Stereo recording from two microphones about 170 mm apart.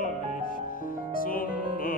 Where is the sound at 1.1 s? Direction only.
55° left (ahead or behind).